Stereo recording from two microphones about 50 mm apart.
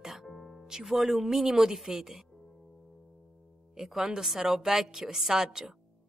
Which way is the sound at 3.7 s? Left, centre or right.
Centre.